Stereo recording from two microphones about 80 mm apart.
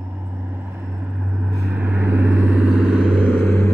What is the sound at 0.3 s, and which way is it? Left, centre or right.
Vehicle, centre.